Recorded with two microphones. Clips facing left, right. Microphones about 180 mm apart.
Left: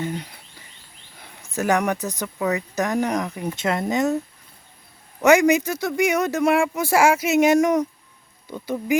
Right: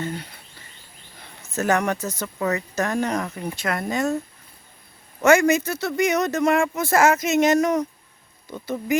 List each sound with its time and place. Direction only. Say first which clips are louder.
0.0 s speech: left 2 dB; 15° left (ahead or behind)
5.2 s speech: left 1 dB; 15° left (ahead or behind)